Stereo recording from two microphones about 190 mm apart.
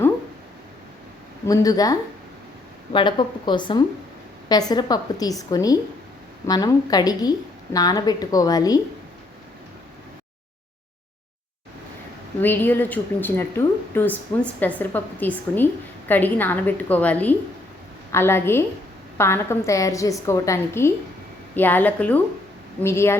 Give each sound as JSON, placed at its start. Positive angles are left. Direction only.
{"t": 1.5, "sound": "a woman's voice", "side_deg": 20}
{"t": 12.4, "sound": "a woman's voice", "side_deg": 10}